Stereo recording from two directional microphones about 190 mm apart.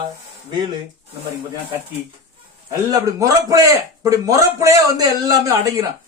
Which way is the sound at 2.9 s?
15° right (ahead or behind).